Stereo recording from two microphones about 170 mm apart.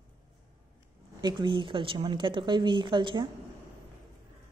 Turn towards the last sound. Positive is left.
turn(degrees=-30)  # may be behind; listen again after turning